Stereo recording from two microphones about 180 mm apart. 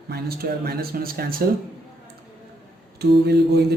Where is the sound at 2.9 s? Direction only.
65° right (ahead or behind).